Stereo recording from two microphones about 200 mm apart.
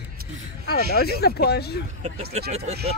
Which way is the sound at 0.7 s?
50° left (ahead or behind).